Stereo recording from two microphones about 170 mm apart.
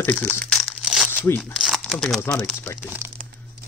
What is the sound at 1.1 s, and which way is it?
Speech, 15° left (ahead or behind).